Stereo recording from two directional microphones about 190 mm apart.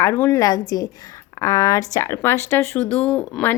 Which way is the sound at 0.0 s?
15° left (ahead or behind).